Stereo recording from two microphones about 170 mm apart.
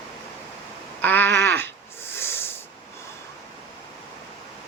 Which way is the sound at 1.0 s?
10° left (ahead or behind).